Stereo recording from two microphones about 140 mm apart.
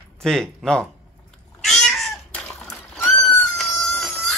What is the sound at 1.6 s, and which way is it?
Cat, 5° left (ahead or behind).